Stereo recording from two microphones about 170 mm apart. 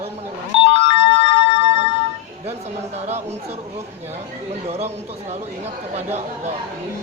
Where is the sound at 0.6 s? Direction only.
35° left (ahead or behind).